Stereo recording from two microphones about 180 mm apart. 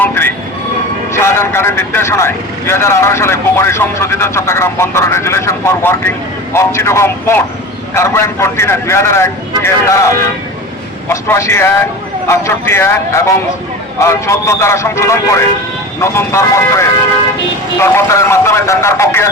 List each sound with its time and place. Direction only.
0.0 s vehicle: 10° left (ahead or behind)
1.1 s speech: 15° left (ahead or behind)
11.1 s speech: 15° left (ahead or behind)